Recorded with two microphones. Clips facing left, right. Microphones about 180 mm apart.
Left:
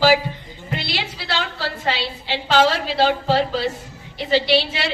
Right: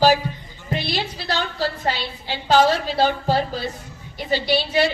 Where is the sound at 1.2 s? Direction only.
90° left.